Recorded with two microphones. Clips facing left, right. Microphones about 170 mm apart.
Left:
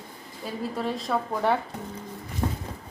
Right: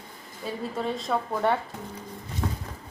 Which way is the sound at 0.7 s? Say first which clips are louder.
Even; centre (ahead or behind).